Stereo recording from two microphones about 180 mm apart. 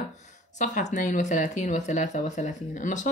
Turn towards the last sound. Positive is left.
turn(degrees=45)  # may be behind; listen again after turning